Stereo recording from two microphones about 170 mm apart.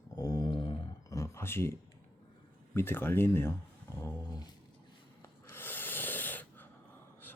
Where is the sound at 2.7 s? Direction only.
15° left (ahead or behind).